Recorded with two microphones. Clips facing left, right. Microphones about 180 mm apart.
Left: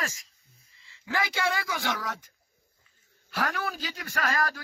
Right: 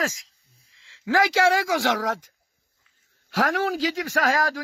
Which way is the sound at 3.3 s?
90° right.